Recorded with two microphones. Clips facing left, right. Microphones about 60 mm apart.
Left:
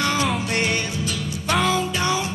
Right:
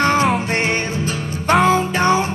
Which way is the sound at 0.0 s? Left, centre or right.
Right.